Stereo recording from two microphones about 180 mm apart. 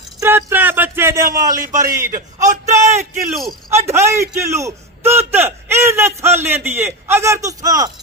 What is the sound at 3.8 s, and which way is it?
A man's voice, 15° right (ahead or behind).